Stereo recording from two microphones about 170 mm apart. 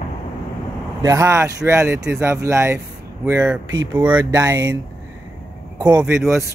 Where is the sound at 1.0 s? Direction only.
15° right (ahead or behind).